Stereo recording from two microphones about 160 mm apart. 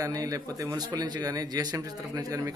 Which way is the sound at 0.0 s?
20° right (ahead or behind).